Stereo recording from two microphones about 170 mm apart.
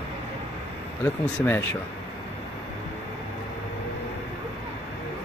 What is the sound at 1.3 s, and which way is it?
Speech, 10° left (ahead or behind).